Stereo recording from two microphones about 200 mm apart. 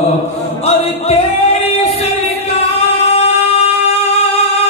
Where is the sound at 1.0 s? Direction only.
30° left (ahead or behind).